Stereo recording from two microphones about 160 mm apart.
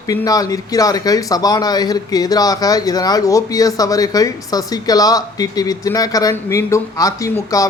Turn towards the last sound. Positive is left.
turn(degrees=20)  # may be behind; listen again after turning